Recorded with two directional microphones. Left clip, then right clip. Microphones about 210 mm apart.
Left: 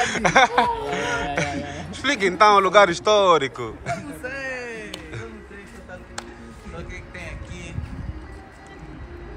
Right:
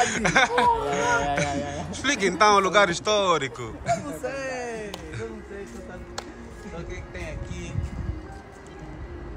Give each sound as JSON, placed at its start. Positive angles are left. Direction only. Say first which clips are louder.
{"t": 0.0, "sound": "speech", "louder": "left 4 dB", "side_deg": -5}
{"t": 4.2, "sound": "a sound", "louder": "even", "side_deg": -60}
{"t": 6.7, "sound": "music", "louder": "left 1 dB", "side_deg": -50}